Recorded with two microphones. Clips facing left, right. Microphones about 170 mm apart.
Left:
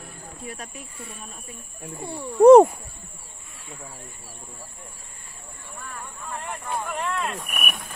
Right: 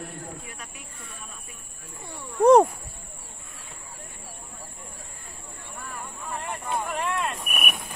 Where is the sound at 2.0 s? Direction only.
35° left (ahead or behind).